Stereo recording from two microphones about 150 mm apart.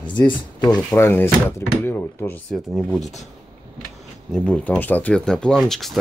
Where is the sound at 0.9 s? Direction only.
15° left (ahead or behind).